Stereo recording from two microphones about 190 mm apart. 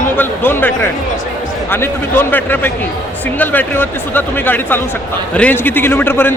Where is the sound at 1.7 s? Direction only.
10° left (ahead or behind).